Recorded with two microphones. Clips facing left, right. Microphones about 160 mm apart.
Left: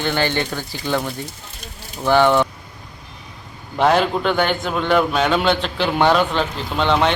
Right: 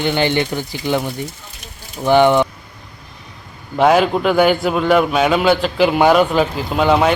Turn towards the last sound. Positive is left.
turn(degrees=-5)  # may be behind; listen again after turning